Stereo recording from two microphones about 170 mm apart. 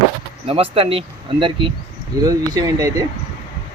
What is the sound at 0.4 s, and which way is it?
Speech, 35° right (ahead or behind).